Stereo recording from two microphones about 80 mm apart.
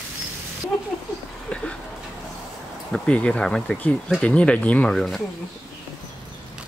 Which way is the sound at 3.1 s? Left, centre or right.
Centre.